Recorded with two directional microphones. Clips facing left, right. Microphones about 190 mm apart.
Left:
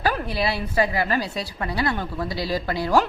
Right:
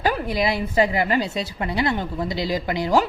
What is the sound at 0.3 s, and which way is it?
A man's voice, 15° right (ahead or behind).